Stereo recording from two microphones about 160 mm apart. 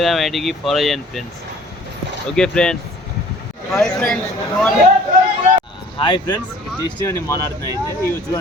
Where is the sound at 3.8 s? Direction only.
5° left (ahead or behind).